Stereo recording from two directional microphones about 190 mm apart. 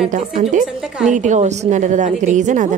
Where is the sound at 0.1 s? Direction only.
35° right (ahead or behind).